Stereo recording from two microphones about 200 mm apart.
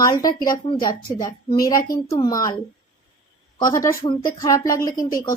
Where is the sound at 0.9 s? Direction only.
45° left (ahead or behind).